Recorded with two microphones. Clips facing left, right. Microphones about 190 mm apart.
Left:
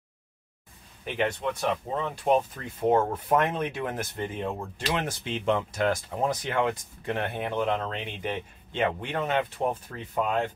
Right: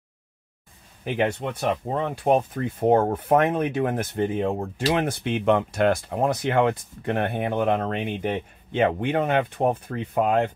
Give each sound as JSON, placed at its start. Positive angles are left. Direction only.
{"t": 1.0, "sound": "speech", "side_deg": -55}